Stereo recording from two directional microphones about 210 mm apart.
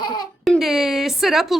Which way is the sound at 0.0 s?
20° left (ahead or behind).